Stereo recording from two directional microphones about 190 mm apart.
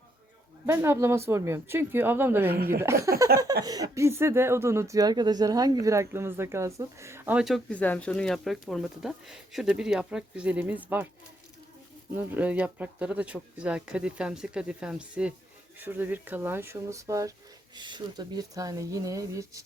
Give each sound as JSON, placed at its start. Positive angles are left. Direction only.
{"t": 0.6, "sound": "speech", "side_deg": -15}
{"t": 2.5, "sound": "speech", "side_deg": -55}
{"t": 2.8, "sound": "speech", "side_deg": -15}
{"t": 12.1, "sound": "speech", "side_deg": -10}